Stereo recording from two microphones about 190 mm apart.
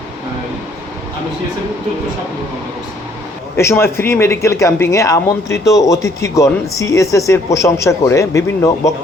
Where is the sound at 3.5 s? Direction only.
15° left (ahead or behind).